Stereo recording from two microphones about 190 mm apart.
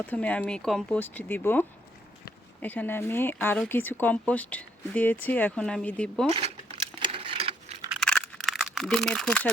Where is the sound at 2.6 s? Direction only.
10° left (ahead or behind).